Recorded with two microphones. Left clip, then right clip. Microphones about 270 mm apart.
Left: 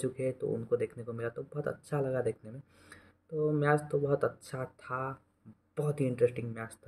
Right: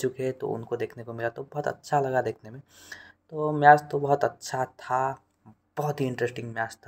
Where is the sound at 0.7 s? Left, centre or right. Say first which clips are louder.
Right 1 dB; right.